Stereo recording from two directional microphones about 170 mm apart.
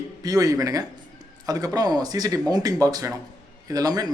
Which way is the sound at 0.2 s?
20° right (ahead or behind).